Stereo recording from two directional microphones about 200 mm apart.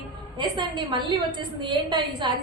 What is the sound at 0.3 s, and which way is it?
A woman's voice, 25° right (ahead or behind).